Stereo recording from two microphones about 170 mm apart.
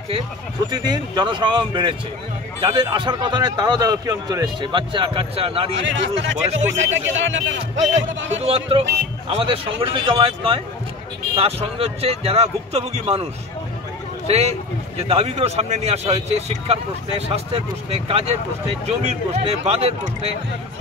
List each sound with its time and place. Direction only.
0.7 s a man's voice: 25° right (ahead or behind)
5.8 s speech: 90° right
8.4 s a man's voice: 35° right (ahead or behind)